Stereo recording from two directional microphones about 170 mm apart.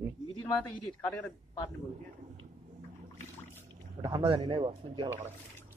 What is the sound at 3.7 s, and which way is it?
Speech, 30° right (ahead or behind).